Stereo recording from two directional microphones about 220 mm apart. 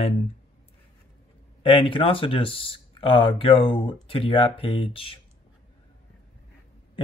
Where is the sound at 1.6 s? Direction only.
20° left (ahead or behind).